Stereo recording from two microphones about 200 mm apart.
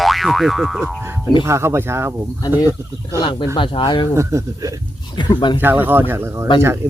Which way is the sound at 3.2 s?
25° left (ahead or behind).